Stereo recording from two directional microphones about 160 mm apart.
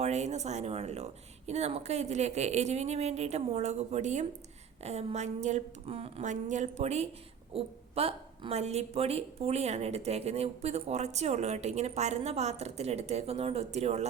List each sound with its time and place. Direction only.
0.0 s a woman's voice: 45° right (ahead or behind)